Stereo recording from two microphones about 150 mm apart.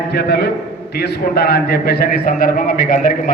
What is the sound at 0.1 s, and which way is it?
A man's voice, 90° left.